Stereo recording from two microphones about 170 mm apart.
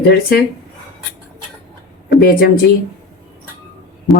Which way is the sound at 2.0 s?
60° left (ahead or behind).